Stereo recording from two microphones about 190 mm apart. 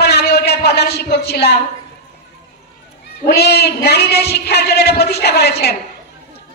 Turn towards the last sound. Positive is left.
turn(degrees=60)  # may be behind; listen again after turning